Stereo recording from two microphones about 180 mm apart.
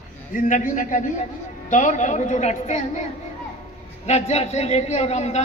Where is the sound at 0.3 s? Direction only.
45° left (ahead or behind).